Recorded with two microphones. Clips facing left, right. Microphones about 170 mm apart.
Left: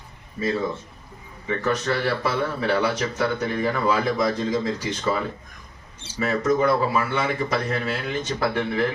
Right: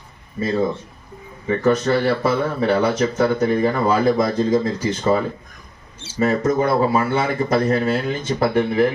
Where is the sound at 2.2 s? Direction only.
45° right (ahead or behind).